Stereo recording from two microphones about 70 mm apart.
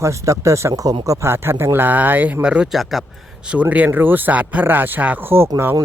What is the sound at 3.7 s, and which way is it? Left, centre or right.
Speech, right.